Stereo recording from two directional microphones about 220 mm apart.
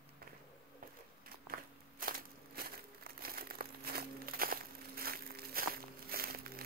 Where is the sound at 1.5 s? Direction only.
40° right (ahead or behind).